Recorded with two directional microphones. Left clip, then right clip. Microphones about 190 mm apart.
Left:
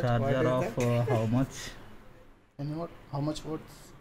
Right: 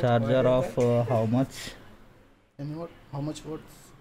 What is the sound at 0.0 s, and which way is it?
Speech, 40° right (ahead or behind).